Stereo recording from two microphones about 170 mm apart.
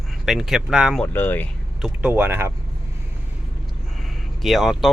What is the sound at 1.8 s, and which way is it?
Speech, 10° right (ahead or behind).